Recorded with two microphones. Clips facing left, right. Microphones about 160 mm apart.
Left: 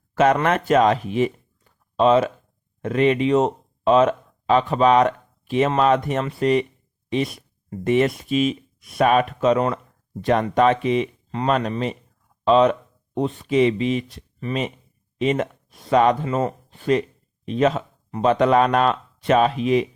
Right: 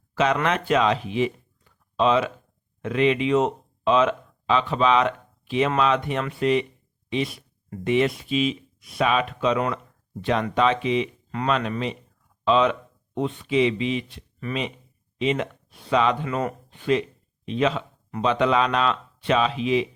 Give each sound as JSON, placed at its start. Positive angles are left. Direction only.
{"t": 0.4, "sound": "speech", "side_deg": 45}
{"t": 16.2, "sound": "speech", "side_deg": 30}